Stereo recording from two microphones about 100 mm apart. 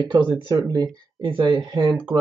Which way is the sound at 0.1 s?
40° right (ahead or behind).